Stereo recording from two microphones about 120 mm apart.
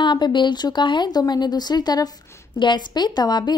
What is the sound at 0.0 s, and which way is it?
A woman's voice, 40° left (ahead or behind).